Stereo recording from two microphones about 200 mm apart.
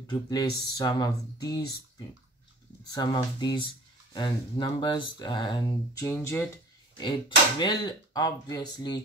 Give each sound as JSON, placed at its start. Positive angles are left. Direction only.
{"t": 0.0, "sound": "speech", "side_deg": 20}
{"t": 7.6, "sound": "speech", "side_deg": 20}